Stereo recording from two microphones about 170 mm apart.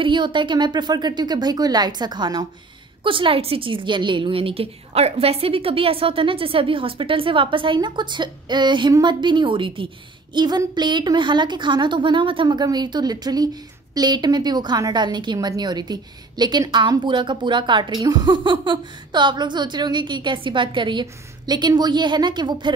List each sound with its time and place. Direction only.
0.0 s a woman's voice: 30° right (ahead or behind)